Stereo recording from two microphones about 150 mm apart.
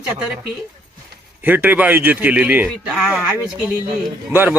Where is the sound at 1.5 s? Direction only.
10° right (ahead or behind).